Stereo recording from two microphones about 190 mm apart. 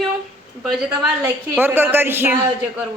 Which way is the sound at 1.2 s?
10° right (ahead or behind).